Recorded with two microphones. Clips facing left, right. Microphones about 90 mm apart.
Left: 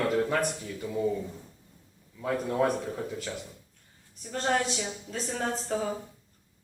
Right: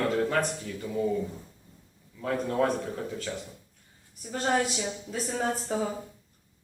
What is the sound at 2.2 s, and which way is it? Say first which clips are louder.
Speech: even; 10° left (ahead or behind).